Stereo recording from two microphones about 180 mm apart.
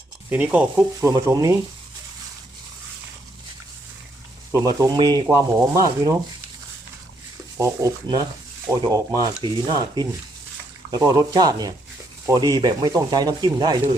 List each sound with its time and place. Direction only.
0.3 s speech: 10° right (ahead or behind)
4.5 s speech: 20° right (ahead or behind)
7.5 s speech: 15° right (ahead or behind)